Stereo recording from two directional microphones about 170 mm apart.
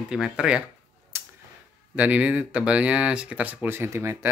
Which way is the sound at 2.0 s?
10° right (ahead or behind).